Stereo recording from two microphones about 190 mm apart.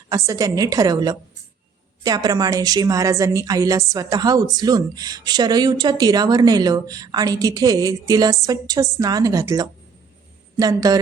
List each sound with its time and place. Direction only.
0.1 s speech: 15° right (ahead or behind)